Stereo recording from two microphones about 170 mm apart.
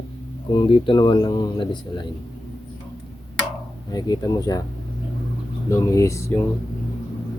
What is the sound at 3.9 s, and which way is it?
Speech, 25° left (ahead or behind).